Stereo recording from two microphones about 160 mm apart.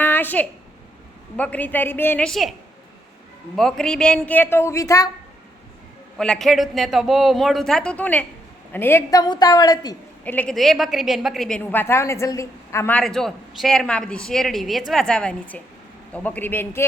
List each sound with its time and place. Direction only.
0.0 s a sound: 10° left (ahead or behind)
1.4 s a woman's voice: 10° left (ahead or behind)
6.1 s a man's voice: 5° left (ahead or behind); by 9.9 s 25° left (ahead or behind)
10.2 s a woman's voice: 10° left (ahead or behind)
13.0 s a man's voice: 5° left (ahead or behind)